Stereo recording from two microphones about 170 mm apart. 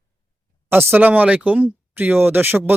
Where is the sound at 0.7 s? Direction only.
15° right (ahead or behind).